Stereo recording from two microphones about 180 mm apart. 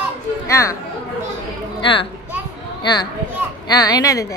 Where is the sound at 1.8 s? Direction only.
25° left (ahead or behind).